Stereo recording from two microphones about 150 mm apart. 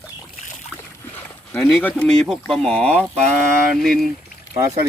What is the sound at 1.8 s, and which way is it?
Speech, 10° left (ahead or behind).